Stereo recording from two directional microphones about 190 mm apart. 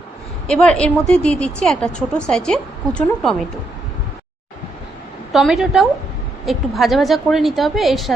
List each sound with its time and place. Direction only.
0.4 s a woman's voice: 5° left (ahead or behind)
5.3 s a woman's voice: centre (ahead or behind)